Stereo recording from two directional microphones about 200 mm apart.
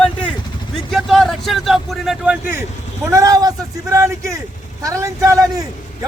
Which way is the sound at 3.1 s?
15° right (ahead or behind).